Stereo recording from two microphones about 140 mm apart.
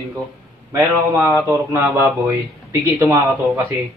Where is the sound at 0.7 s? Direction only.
20° right (ahead or behind).